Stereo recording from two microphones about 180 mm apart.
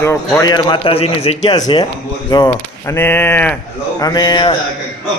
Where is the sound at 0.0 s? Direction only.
15° left (ahead or behind); by 1.4 s 35° left (ahead or behind).